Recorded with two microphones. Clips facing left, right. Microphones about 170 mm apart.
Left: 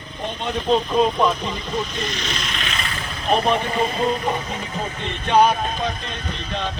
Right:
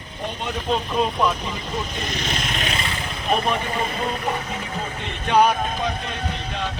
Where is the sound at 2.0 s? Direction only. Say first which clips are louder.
Even; 50° right (ahead or behind).